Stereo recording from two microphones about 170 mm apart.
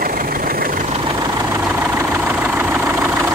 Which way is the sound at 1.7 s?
15° right (ahead or behind).